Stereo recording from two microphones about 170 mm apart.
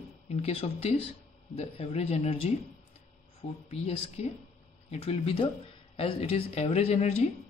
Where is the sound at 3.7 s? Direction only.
35° left (ahead or behind).